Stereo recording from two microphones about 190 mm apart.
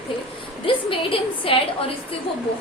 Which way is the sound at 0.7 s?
30° left (ahead or behind).